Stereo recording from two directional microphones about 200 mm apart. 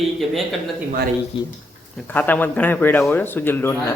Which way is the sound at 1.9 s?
10° left (ahead or behind).